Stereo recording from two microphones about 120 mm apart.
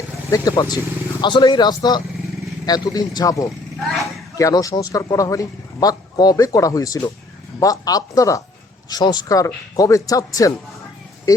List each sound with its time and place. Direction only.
0.3 s a man's voice: 25° left (ahead or behind)